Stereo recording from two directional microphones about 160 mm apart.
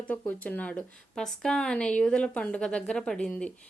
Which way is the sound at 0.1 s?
10° left (ahead or behind).